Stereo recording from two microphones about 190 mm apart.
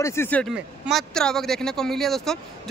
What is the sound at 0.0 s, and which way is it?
Speech, 15° left (ahead or behind).